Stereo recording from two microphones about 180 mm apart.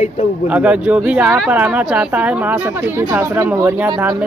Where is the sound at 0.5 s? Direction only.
5° right (ahead or behind).